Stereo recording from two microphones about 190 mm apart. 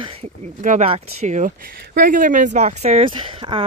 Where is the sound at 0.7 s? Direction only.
35° right (ahead or behind).